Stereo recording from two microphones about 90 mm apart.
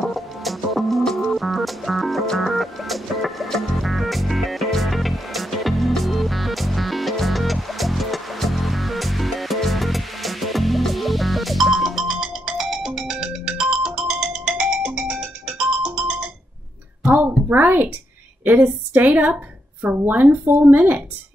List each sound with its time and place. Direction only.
0.0 s music: centre (ahead or behind)
17.0 s a sound: 20° right (ahead or behind)
18.4 s a woman's voice: 20° right (ahead or behind)